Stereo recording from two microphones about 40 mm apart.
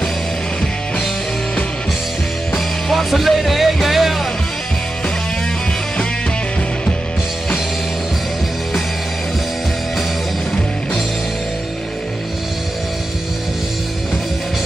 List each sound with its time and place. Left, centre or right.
2.5 s music: centre